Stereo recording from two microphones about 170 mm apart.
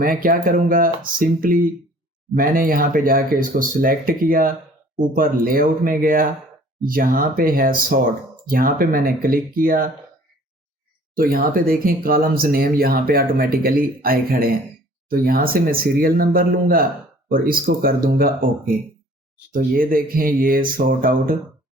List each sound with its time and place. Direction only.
0.0 s speech: 55° right (ahead or behind)
11.1 s speech: 60° right (ahead or behind)